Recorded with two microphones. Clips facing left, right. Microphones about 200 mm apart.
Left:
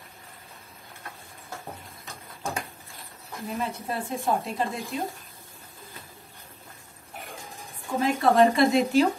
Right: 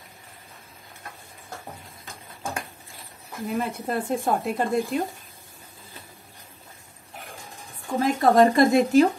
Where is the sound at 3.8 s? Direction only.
50° right (ahead or behind).